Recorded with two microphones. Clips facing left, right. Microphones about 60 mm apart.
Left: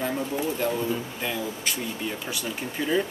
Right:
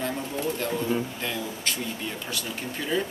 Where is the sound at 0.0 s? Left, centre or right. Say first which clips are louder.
Left 2 dB; centre.